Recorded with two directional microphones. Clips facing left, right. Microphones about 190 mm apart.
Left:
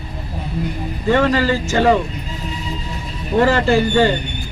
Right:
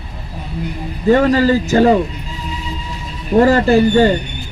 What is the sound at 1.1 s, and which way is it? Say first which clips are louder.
Speech: right 4 dB; 40° right (ahead or behind).